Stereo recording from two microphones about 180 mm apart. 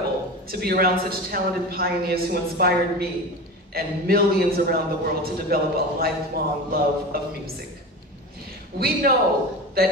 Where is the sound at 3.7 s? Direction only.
55° right (ahead or behind).